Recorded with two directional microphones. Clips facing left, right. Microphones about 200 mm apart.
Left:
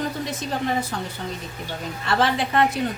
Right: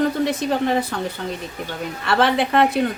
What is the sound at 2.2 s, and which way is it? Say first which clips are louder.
Speech: right 4 dB; 60° right (ahead or behind).